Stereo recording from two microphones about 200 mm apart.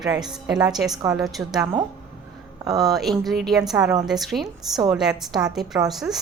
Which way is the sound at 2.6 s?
20° right (ahead or behind).